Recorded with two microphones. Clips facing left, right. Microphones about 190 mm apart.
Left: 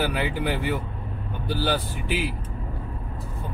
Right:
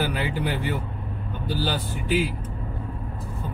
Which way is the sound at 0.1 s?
15° left (ahead or behind).